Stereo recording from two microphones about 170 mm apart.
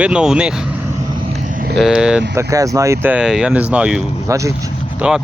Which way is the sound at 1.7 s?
5° right (ahead or behind).